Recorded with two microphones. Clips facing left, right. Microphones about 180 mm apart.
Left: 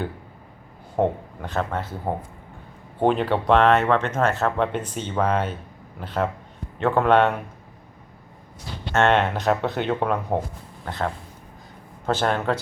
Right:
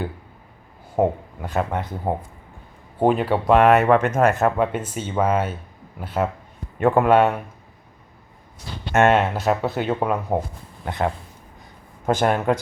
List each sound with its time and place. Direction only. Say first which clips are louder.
0.9 s speech: right 2 dB; 10° right (ahead or behind)
3.0 s speech: right 2 dB; 10° right (ahead or behind)
8.9 s speech: right 2 dB; 10° right (ahead or behind)
10.8 s speech: right 4 dB; 15° right (ahead or behind)